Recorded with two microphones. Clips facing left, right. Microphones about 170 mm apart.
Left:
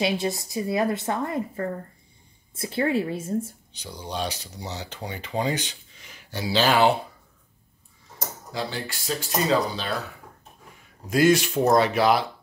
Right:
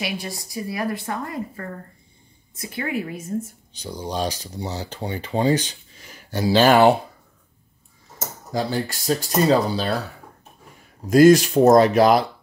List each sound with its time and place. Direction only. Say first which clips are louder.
0.0 s a woman's voice: left 5 dB; 25° left (ahead or behind)
3.8 s speech: right 5 dB; 35° right (ahead or behind); by 6.9 s 50° right (ahead or behind)
8.5 s speech: right 7 dB; 45° right (ahead or behind)
11.1 s speech: right 7 dB; 40° right (ahead or behind)